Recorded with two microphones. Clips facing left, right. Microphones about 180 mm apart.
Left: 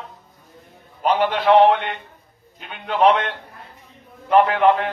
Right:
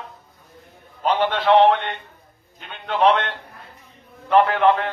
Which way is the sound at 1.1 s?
10° left (ahead or behind).